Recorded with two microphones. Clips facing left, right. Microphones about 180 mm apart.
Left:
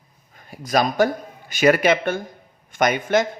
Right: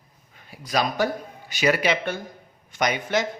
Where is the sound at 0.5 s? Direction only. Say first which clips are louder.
Left 5 dB; 45° left (ahead or behind).